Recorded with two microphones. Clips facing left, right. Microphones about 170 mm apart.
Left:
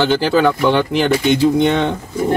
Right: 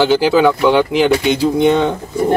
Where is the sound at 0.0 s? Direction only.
5° right (ahead or behind).